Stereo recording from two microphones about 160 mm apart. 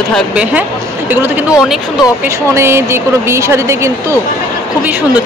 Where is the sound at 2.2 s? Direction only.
15° right (ahead or behind).